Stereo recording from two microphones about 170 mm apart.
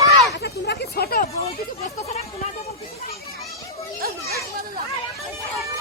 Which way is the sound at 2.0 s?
40° left (ahead or behind).